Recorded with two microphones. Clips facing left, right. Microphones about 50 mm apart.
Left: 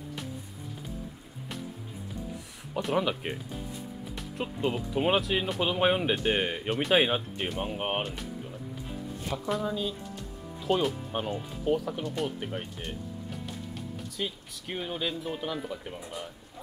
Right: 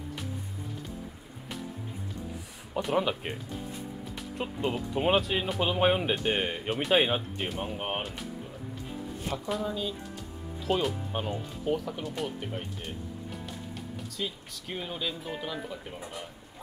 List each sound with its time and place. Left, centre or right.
2.7 s speech: centre
4.4 s speech: centre
7.7 s speech: centre
8.0 s speech: centre
9.5 s speech: centre
14.1 s speech: centre